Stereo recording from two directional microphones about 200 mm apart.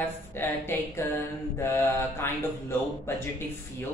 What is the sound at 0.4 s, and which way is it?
Speech, 10° left (ahead or behind).